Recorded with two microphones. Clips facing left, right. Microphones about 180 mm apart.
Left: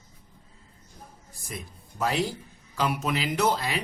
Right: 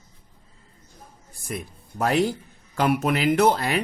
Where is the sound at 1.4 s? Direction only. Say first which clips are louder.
Right 7 dB; 55° right (ahead or behind).